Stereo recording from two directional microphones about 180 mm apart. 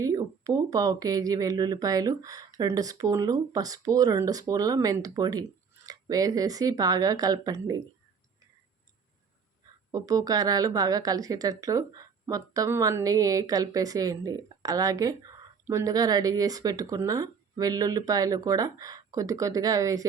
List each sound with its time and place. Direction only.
0.0 s a woman's voice: 20° right (ahead or behind)
9.9 s a woman's voice: 20° right (ahead or behind)